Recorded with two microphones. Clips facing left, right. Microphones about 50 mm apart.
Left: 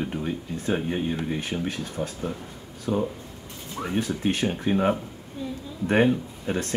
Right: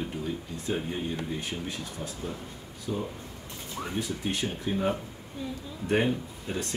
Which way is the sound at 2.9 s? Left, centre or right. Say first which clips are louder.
Left 7 dB; left.